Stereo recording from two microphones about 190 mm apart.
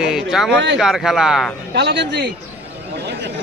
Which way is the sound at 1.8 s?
65° right (ahead or behind).